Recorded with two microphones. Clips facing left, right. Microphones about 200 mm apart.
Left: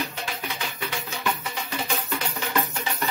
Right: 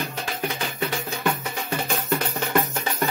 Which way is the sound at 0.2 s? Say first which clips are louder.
Right 4 dB; 50° right (ahead or behind).